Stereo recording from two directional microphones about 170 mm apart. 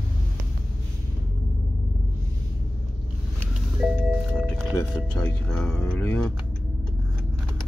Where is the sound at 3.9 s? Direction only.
5° right (ahead or behind).